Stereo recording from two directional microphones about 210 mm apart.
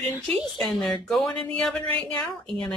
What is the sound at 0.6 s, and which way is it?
A woman's voice, centre (ahead or behind).